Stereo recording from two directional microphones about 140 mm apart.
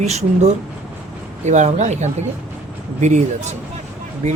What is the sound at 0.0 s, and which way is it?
Speech, 50° right (ahead or behind).